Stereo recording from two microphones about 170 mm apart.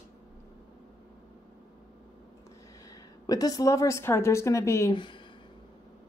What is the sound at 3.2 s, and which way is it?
A woman's voice, 20° left (ahead or behind).